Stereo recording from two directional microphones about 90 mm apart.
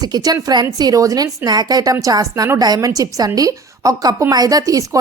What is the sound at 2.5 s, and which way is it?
A woman's voice, 45° right (ahead or behind).